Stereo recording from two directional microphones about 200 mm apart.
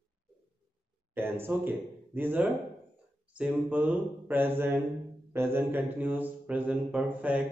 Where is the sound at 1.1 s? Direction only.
10° right (ahead or behind).